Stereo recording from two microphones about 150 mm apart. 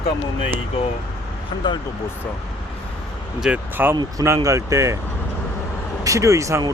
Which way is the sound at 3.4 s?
10° right (ahead or behind).